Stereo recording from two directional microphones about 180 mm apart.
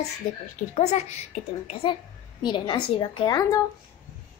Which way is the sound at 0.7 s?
35° left (ahead or behind).